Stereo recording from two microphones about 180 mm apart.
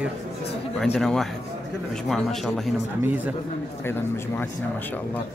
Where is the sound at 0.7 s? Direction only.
Centre (ahead or behind).